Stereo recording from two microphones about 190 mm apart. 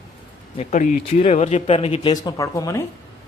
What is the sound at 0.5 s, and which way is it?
Speech, 35° left (ahead or behind).